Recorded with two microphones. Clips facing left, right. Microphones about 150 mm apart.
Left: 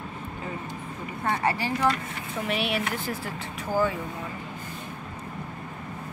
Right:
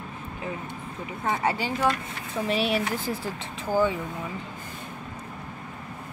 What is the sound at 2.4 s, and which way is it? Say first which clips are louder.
Speech: right 3 dB; 35° right (ahead or behind).